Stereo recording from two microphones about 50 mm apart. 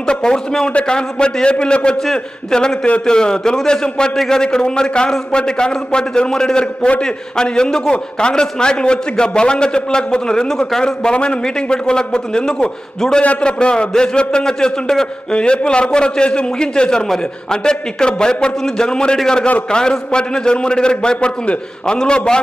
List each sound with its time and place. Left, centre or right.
0.0 s a man's voice: centre